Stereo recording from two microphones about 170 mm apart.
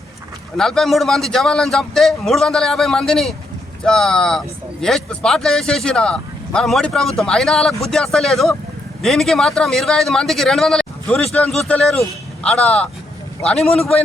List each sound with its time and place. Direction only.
0.5 s speech: centre (ahead or behind)